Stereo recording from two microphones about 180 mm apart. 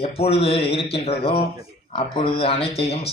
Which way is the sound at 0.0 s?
35° left (ahead or behind).